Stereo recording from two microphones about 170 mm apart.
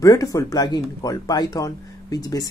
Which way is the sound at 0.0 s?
20° left (ahead or behind).